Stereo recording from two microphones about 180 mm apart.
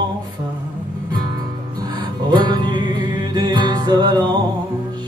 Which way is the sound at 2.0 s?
25° right (ahead or behind).